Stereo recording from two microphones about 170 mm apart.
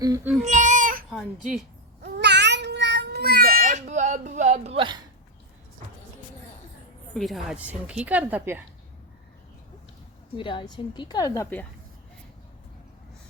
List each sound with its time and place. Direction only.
0.4 s baby cry: 45° right (ahead or behind)
1.1 s speech: centre (ahead or behind)
2.0 s a sound: 75° right (ahead or behind); by 4.9 s 30° right (ahead or behind)
7.1 s a woman's voice: centre (ahead or behind)
10.3 s a woman's voice: 30° left (ahead or behind)